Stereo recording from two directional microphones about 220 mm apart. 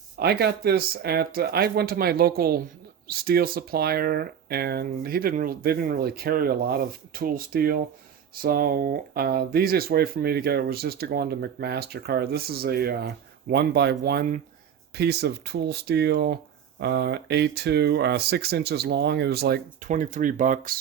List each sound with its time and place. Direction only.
0.2 s speech: 45° right (ahead or behind)